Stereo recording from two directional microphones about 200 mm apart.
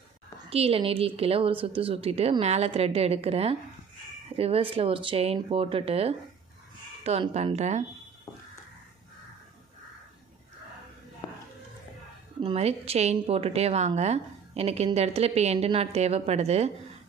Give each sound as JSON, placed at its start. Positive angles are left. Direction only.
{"t": 0.5, "sound": "a woman's voice", "side_deg": -30}
{"t": 11.2, "sound": "a sound", "side_deg": 15}
{"t": 12.4, "sound": "a woman's voice", "side_deg": -30}